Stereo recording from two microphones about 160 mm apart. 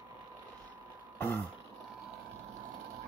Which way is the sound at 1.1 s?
15° left (ahead or behind).